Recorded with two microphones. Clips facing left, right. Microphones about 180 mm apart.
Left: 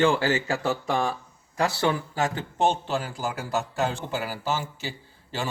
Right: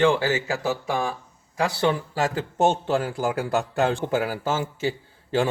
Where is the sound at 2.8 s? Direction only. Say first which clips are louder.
Right 5 dB; 50° right (ahead or behind).